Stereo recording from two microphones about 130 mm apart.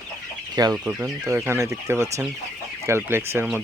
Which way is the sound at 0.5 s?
30° right (ahead or behind).